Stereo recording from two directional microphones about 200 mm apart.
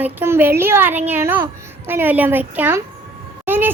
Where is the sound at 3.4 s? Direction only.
10° right (ahead or behind).